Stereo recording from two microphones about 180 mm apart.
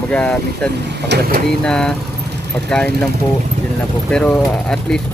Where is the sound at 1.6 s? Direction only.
5° left (ahead or behind).